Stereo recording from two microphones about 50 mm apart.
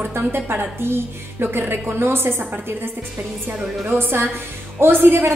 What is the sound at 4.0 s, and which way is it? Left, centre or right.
A woman's voice, right.